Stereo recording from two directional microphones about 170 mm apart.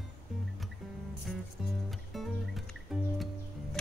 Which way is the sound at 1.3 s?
Centre (ahead or behind).